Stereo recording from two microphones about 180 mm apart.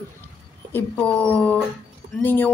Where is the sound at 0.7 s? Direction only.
10° left (ahead or behind).